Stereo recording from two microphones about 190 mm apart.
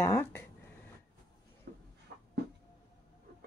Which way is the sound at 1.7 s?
55° right (ahead or behind).